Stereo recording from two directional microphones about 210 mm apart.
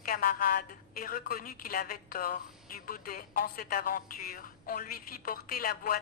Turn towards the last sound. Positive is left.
turn(degrees=45)  # may be behind; listen again after turning